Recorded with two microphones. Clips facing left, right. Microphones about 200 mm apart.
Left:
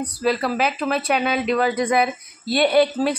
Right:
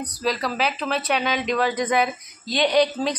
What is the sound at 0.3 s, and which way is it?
Speech, 10° left (ahead or behind).